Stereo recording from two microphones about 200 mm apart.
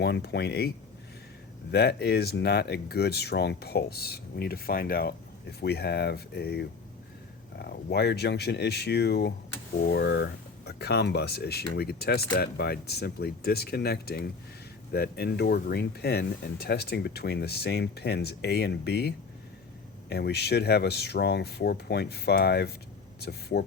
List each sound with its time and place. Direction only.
0.0 s speech: 55° left (ahead or behind)
1.7 s speech: 55° left (ahead or behind)